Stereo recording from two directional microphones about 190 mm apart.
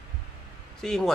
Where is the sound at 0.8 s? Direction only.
5° left (ahead or behind).